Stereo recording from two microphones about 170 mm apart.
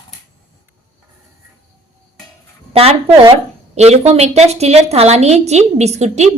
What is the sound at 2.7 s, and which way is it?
A woman's voice, 35° right (ahead or behind).